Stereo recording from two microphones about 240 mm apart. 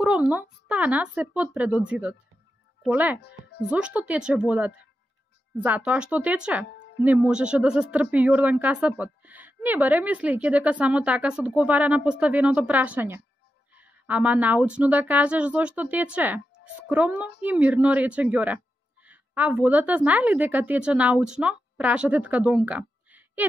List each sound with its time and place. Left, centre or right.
0.0 s speech: centre
3.2 s speech: left
3.7 s a woman's voice: centre